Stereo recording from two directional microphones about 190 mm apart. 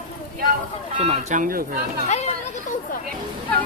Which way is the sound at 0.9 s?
35° right (ahead or behind).